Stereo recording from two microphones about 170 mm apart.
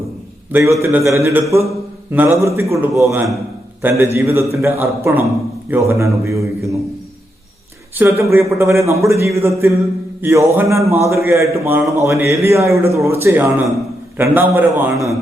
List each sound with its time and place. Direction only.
0.5 s a man's voice: 15° right (ahead or behind)
7.9 s a man's voice: 15° right (ahead or behind)